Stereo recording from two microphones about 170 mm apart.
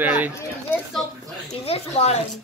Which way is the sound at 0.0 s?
10° right (ahead or behind).